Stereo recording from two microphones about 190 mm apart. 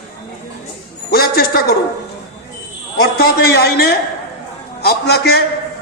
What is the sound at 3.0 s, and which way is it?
A man's voice, 55° left (ahead or behind).